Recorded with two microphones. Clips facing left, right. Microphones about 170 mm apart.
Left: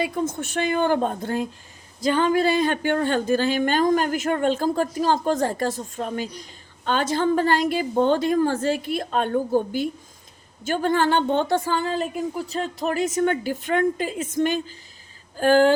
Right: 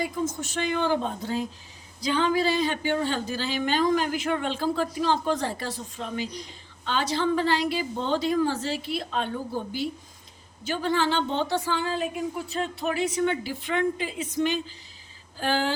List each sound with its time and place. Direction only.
0.0 s speech: 60° left (ahead or behind)